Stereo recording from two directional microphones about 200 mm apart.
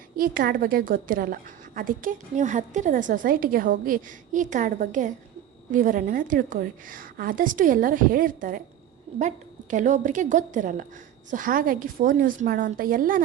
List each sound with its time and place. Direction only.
0.2 s a woman's voice: 45° right (ahead or behind)